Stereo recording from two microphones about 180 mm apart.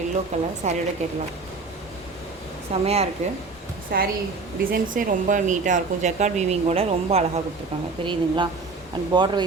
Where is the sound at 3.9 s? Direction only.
60° right (ahead or behind).